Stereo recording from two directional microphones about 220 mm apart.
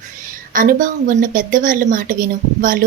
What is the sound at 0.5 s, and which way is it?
A woman's voice, 40° right (ahead or behind).